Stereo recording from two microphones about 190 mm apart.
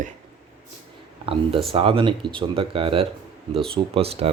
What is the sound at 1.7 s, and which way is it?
Speech, 30° right (ahead or behind).